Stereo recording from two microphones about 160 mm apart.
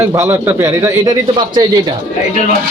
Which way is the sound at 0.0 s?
20° right (ahead or behind).